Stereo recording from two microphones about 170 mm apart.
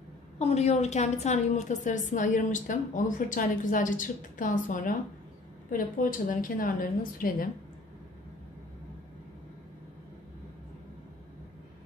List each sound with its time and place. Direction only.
0.4 s a woman's voice: 40° left (ahead or behind)